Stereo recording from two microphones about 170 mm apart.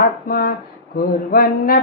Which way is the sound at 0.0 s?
60° left (ahead or behind).